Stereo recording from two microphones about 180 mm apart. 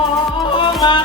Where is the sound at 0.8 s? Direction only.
25° left (ahead or behind).